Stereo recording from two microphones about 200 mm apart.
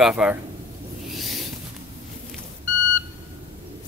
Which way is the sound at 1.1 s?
Centre (ahead or behind).